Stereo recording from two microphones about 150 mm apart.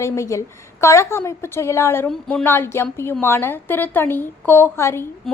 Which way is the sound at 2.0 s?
5° left (ahead or behind).